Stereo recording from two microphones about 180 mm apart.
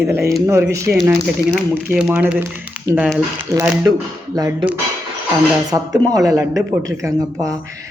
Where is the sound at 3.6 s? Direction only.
5° right (ahead or behind).